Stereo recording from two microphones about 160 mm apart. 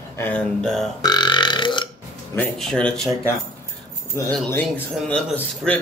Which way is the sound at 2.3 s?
5° left (ahead or behind).